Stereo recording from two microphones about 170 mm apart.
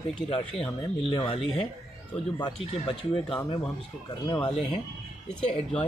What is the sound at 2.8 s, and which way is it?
Speech, 30° left (ahead or behind).